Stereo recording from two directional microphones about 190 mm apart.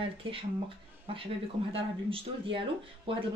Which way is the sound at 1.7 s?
30° right (ahead or behind).